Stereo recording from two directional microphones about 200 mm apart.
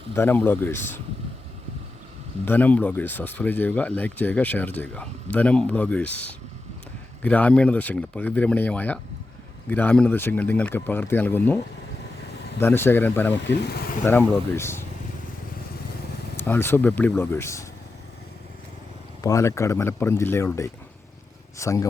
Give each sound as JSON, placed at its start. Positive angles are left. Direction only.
{"t": 0.2, "sound": "speech", "side_deg": 10}
{"t": 2.4, "sound": "speech", "side_deg": 10}
{"t": 13.5, "sound": "speech", "side_deg": 55}
{"t": 14.0, "sound": "speech", "side_deg": 10}
{"t": 16.4, "sound": "speech", "side_deg": 10}
{"t": 19.2, "sound": "speech", "side_deg": 15}